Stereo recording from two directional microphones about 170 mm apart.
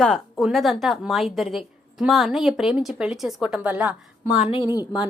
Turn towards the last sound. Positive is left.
turn(degrees=-5)  # may be behind; listen again after turning